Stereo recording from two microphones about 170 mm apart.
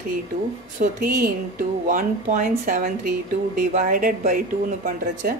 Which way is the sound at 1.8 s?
50° right (ahead or behind).